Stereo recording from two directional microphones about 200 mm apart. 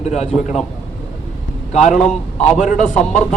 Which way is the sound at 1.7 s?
35° left (ahead or behind).